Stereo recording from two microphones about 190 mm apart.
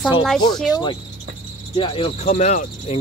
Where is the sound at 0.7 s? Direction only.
25° left (ahead or behind); by 2.9 s 40° left (ahead or behind).